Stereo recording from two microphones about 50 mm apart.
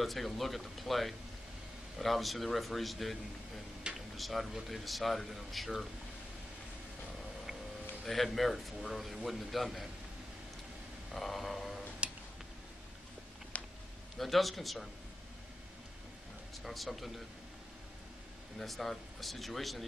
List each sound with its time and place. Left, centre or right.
0.0 s speech: centre
3.9 s a sound: right
4.2 s speech: centre
8.0 s speech: centre
11.1 s a sound: centre
12.0 s music: right
13.5 s a sound: left
14.1 s speech: centre
16.6 s speech: centre
18.6 s speech: centre